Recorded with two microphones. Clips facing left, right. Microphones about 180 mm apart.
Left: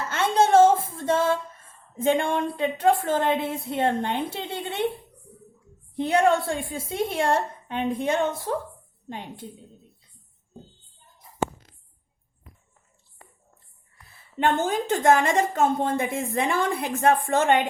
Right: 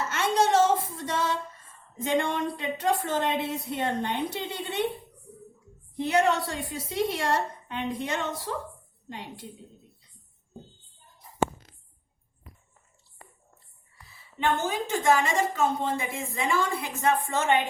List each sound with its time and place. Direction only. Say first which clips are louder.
0.2 s a sound: left 5 dB; 55° left (ahead or behind)
2.0 s a woman's voice: left 4 dB; 50° left (ahead or behind)
6.2 s a woman's voice: left 5 dB; 50° left (ahead or behind)
13.9 s a woman's voice: left 9 dB; 55° left (ahead or behind)